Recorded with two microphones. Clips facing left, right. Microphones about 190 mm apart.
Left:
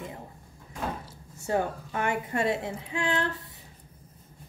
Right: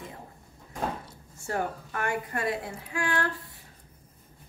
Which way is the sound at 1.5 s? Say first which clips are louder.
Left 3 dB; 20° left (ahead or behind).